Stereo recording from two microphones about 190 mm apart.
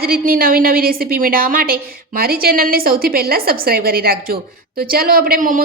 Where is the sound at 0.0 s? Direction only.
50° right (ahead or behind).